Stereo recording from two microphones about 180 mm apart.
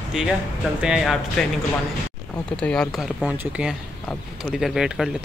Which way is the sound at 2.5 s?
5° left (ahead or behind).